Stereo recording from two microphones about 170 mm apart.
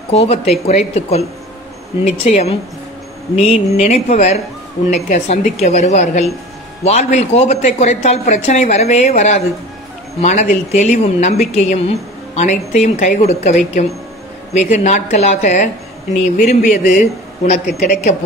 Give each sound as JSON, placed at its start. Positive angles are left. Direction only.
{"t": 0.1, "sound": "speech", "side_deg": 35}
{"t": 3.7, "sound": "a man's voice", "side_deg": 40}